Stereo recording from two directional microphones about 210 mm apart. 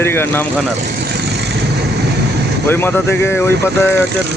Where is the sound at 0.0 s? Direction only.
10° left (ahead or behind).